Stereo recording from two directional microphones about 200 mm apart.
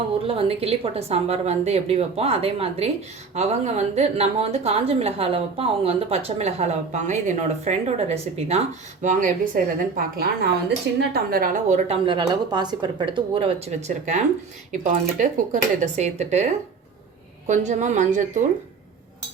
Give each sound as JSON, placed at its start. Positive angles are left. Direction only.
{"t": 0.2, "sound": "a woman's voice", "side_deg": -30}
{"t": 12.0, "sound": "a woman's voice", "side_deg": -20}